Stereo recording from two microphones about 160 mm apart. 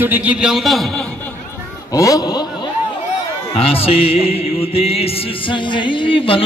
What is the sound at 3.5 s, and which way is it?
Music, 35° left (ahead or behind).